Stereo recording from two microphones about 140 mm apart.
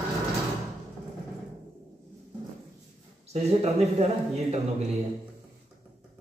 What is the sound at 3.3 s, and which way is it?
Speech, 50° right (ahead or behind).